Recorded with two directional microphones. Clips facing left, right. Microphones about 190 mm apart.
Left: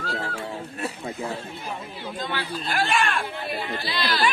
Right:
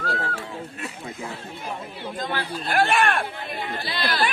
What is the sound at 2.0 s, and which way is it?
Speech, 45° right (ahead or behind).